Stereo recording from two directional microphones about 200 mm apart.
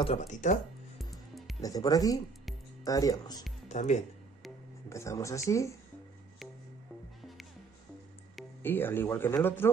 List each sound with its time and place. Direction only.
0.0 s speech: 30° left (ahead or behind)
1.6 s speech: 20° left (ahead or behind)
3.6 s speech: 35° left (ahead or behind)
4.8 s speech: 15° left (ahead or behind)
8.6 s speech: 10° left (ahead or behind)